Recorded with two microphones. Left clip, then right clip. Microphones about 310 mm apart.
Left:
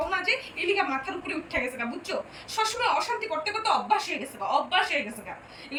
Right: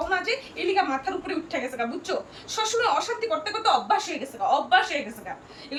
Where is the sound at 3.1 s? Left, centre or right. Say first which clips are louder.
Right 2 dB; centre.